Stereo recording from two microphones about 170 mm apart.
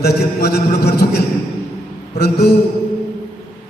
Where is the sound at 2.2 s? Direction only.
70° left (ahead or behind).